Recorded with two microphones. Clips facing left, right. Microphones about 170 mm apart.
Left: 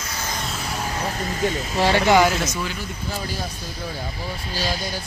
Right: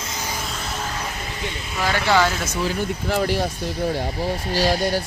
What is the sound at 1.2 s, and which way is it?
Speech, 45° left (ahead or behind).